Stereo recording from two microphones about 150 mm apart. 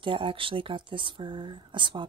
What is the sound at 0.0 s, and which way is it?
Speech, 35° right (ahead or behind).